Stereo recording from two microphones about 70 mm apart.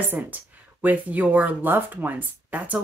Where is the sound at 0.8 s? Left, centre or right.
Right.